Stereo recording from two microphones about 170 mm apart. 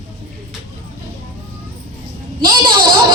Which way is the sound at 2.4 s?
30° right (ahead or behind).